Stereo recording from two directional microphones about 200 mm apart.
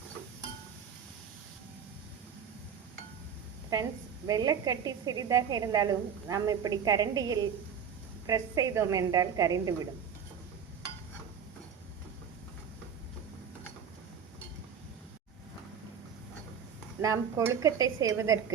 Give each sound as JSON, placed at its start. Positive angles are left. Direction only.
{"t": 4.3, "sound": "a woman's voice", "side_deg": -20}
{"t": 17.0, "sound": "a woman's voice", "side_deg": -15}